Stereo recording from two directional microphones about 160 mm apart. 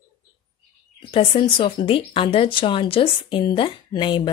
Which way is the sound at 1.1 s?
35° left (ahead or behind).